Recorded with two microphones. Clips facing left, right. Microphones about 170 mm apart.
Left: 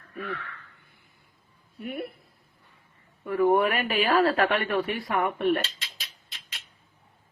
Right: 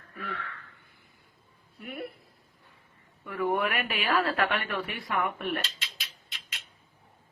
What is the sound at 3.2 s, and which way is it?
A woman's voice, 30° left (ahead or behind).